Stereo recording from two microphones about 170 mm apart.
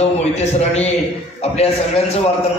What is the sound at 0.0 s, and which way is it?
Speech, 40° left (ahead or behind).